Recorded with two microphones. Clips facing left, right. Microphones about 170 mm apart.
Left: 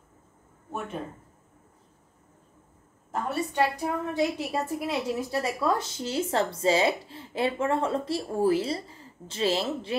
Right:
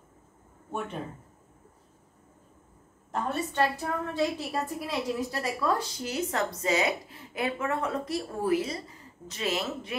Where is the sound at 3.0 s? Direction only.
10° left (ahead or behind).